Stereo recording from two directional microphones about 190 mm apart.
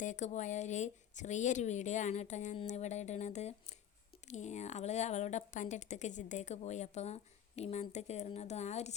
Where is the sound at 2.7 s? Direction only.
35° left (ahead or behind).